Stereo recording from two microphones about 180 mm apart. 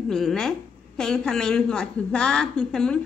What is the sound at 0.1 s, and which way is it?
A woman's voice, centre (ahead or behind).